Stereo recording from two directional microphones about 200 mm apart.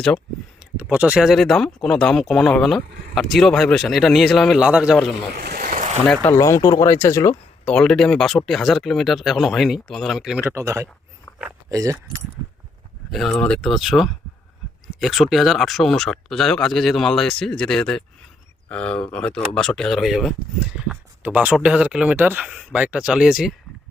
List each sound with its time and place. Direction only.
0.6 s speech: 5° right (ahead or behind)
5.3 s vehicle: 50° right (ahead or behind)
6.1 s speech: 10° left (ahead or behind); by 10.8 s 15° right (ahead or behind)
11.3 s a sound: 10° left (ahead or behind)
11.7 s speech: 15° right (ahead or behind)
12.4 s a sound: 20° right (ahead or behind)
13.1 s speech: centre (ahead or behind)